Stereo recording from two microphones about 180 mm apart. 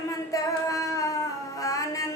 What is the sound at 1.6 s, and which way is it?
Music, 20° left (ahead or behind).